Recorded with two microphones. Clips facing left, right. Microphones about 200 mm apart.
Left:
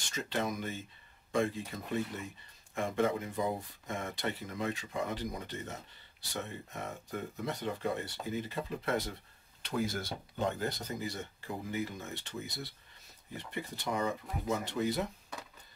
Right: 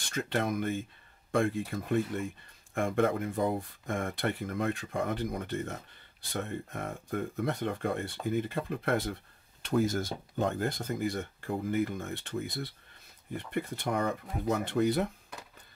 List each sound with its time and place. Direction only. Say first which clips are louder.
0.1 s speech: right 4 dB; 55° right (ahead or behind)